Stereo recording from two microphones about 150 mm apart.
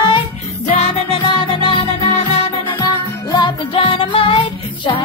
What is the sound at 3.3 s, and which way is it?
Music, 30° left (ahead or behind).